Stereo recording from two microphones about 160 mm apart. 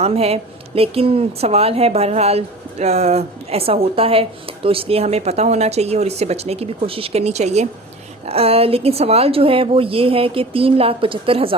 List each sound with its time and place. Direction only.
0.0 s a woman's voice: 40° right (ahead or behind)